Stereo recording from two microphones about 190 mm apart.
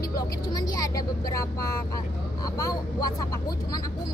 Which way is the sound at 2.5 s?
20° left (ahead or behind).